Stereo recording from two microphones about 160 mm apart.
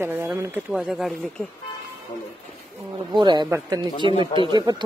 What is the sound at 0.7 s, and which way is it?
Speech, 5° right (ahead or behind).